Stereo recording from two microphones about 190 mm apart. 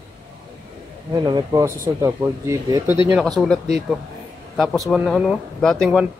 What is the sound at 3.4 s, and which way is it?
Speech, centre (ahead or behind).